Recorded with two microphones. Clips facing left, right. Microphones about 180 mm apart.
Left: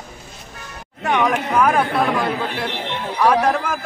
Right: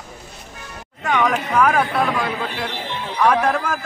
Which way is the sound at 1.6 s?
5° left (ahead or behind).